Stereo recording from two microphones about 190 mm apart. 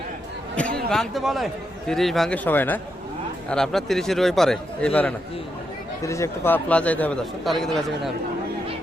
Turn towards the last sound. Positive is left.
turn(degrees=0)  # may be behind; listen again after turning